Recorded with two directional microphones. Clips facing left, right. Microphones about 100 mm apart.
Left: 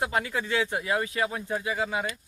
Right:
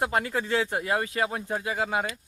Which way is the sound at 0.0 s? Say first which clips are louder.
Right 2 dB; 45° right (ahead or behind).